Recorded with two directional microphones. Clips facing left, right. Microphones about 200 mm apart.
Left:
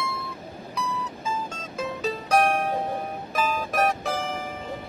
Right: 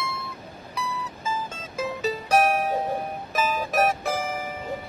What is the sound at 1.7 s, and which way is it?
Music, 5° right (ahead or behind).